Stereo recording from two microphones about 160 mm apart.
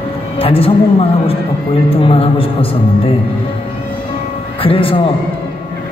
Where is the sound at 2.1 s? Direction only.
35° left (ahead or behind).